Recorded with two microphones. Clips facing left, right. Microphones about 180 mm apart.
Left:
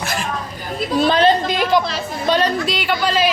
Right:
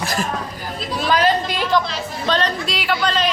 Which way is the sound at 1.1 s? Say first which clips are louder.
Left 1 dB; 25° left (ahead or behind).